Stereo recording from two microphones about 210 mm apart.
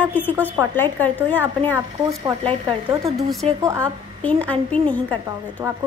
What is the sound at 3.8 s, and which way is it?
A woman's voice, 5° left (ahead or behind).